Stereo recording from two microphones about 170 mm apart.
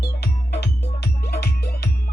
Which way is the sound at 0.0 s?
70° left (ahead or behind).